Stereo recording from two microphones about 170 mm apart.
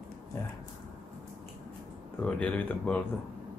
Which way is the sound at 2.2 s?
5° left (ahead or behind).